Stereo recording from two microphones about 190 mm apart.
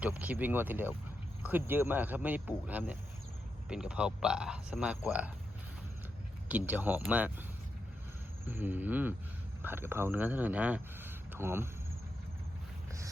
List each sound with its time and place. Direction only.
0.0 s a man's voice: 5° right (ahead or behind)
6.5 s a man's voice: 10° right (ahead or behind)
8.4 s a man's voice: 10° right (ahead or behind)